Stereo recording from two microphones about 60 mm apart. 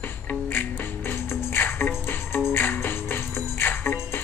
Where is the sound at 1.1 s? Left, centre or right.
Left.